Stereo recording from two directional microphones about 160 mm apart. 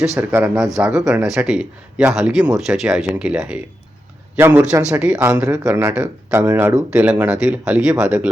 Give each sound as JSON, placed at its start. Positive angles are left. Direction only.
{"t": 0.0, "sound": "speech", "side_deg": -5}
{"t": 4.9, "sound": "speech", "side_deg": -5}